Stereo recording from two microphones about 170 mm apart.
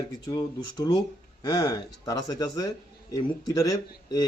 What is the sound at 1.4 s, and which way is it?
A man's voice, 20° left (ahead or behind).